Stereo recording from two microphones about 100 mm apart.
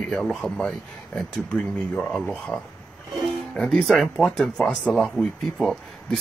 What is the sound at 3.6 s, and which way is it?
Speech, 5° left (ahead or behind).